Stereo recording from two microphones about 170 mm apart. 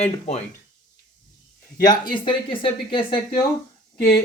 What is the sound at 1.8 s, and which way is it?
Speech, 25° left (ahead or behind).